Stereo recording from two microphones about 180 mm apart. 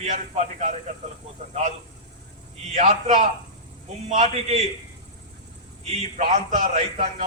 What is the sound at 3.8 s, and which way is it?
Speech, 35° right (ahead or behind).